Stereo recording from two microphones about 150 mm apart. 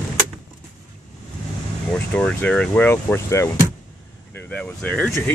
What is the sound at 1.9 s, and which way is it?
Speech, 10° left (ahead or behind).